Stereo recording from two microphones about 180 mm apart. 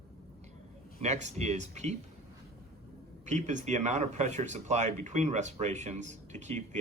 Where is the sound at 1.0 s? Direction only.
40° right (ahead or behind).